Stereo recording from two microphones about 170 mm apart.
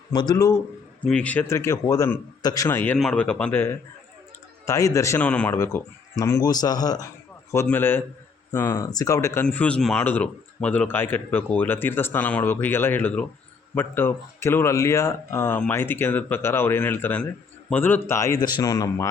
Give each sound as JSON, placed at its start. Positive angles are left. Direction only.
{"t": 0.1, "sound": "speech", "side_deg": 25}
{"t": 1.0, "sound": "speech", "side_deg": 5}